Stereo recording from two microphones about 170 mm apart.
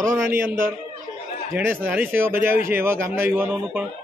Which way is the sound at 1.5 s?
10° right (ahead or behind).